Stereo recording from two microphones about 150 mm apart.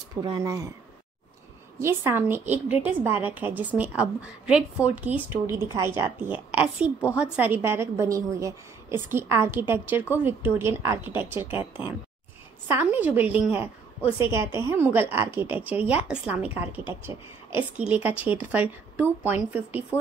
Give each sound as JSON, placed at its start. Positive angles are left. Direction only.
{"t": 0.2, "sound": "speech", "side_deg": -25}
{"t": 1.8, "sound": "a woman's voice", "side_deg": -15}